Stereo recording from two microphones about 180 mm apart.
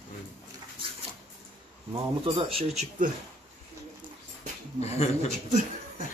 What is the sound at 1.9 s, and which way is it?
Speech, 30° right (ahead or behind).